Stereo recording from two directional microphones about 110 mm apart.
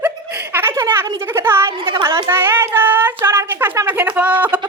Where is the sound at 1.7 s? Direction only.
50° right (ahead or behind).